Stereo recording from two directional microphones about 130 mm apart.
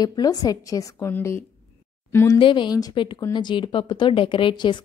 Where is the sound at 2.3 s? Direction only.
40° left (ahead or behind).